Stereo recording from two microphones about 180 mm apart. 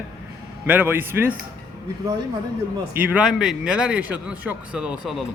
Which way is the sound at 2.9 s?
10° right (ahead or behind).